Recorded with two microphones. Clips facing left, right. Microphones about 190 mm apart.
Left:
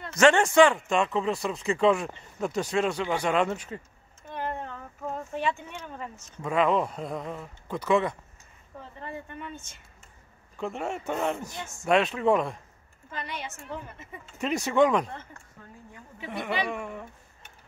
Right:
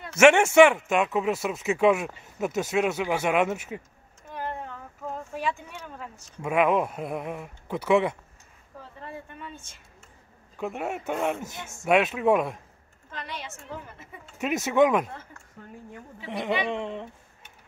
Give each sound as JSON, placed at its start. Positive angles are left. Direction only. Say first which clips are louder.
{"t": 0.0, "sound": "speech", "louder": "right 3 dB", "side_deg": -10}
{"t": 4.3, "sound": "a sound", "louder": "left 1 dB", "side_deg": -5}
{"t": 6.4, "sound": "speech", "louder": "right 1 dB", "side_deg": -10}
{"t": 10.6, "sound": "speech", "louder": "right 1 dB", "side_deg": -5}
{"t": 16.3, "sound": "a woman's voice", "louder": "right 3 dB", "side_deg": -20}